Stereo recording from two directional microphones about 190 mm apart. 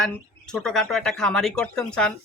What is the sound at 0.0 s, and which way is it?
Speech, 5° left (ahead or behind).